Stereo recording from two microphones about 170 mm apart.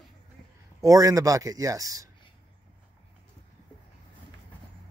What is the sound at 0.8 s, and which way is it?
Speech, 20° right (ahead or behind).